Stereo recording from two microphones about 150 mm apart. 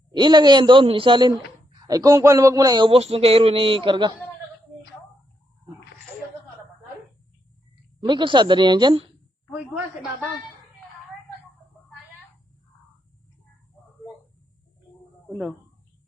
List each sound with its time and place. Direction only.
0.1 s a man's voice: 30° right (ahead or behind)
1.9 s a man's voice: 25° right (ahead or behind)
8.0 s a man's voice: 30° right (ahead or behind)